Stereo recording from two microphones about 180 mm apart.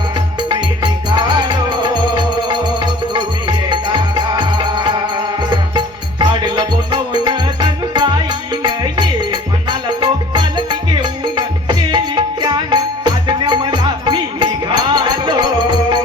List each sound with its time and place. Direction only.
0.8 s music: 25° right (ahead or behind)
3.7 s music: 25° right (ahead or behind)
12.4 s music: 20° right (ahead or behind)